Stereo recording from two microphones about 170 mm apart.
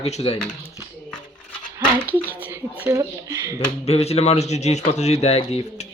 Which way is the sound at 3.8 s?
40° left (ahead or behind).